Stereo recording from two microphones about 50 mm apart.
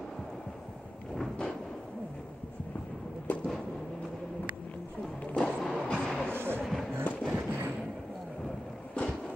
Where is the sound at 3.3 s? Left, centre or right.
Left.